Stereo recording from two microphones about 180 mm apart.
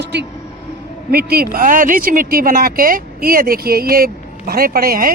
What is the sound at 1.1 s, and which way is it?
A woman's voice, 55° right (ahead or behind).